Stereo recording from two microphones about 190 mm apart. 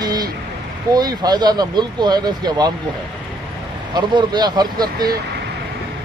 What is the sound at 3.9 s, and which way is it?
Speech, 20° right (ahead or behind).